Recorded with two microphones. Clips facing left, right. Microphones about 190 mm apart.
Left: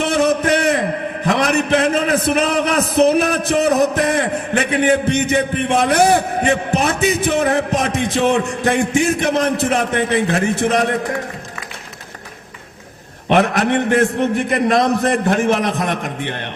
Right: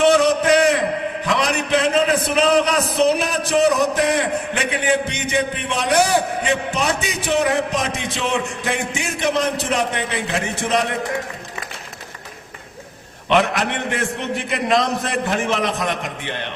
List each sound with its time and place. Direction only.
0.2 s a sound: 55° left (ahead or behind)
1.3 s a man's voice: 55° left (ahead or behind)
13.2 s a man's voice: 50° left (ahead or behind)